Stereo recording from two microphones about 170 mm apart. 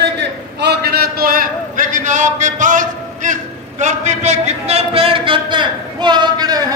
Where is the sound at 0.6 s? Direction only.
70° right (ahead or behind).